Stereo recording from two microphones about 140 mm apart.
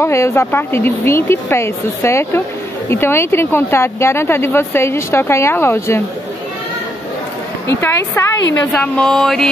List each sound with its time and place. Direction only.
0.0 s a woman's voice: 20° left (ahead or behind)
7.6 s a woman's voice: 20° left (ahead or behind)
8.7 s a sound: 10° left (ahead or behind)